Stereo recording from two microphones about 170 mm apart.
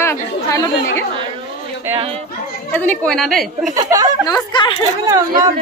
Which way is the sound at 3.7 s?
20° right (ahead or behind).